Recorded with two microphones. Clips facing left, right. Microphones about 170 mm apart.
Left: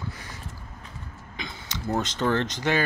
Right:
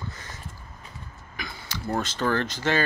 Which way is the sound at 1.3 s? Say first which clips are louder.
Even; 20° left (ahead or behind).